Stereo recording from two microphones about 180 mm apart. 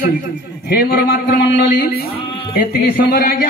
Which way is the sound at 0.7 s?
60° left (ahead or behind).